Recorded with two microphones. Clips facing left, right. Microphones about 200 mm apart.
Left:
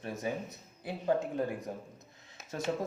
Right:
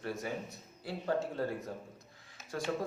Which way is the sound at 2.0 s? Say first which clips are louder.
Left 2 dB; 20° left (ahead or behind).